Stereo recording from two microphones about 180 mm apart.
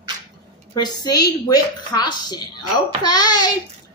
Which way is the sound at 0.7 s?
20° left (ahead or behind).